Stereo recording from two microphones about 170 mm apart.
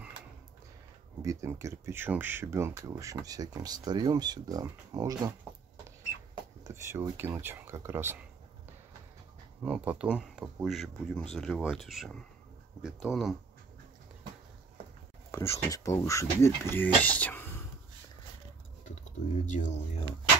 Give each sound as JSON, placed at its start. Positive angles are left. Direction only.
{"t": 1.2, "sound": "speech", "side_deg": -20}
{"t": 6.6, "sound": "speech", "side_deg": -15}
{"t": 9.6, "sound": "speech", "side_deg": -10}
{"t": 15.3, "sound": "speech", "side_deg": 15}
{"t": 19.4, "sound": "speech", "side_deg": 45}